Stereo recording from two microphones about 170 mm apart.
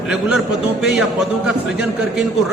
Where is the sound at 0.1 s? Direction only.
5° right (ahead or behind).